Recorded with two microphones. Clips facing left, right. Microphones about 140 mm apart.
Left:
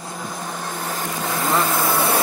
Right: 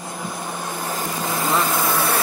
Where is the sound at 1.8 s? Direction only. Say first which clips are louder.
Left 1 dB; 15° left (ahead or behind).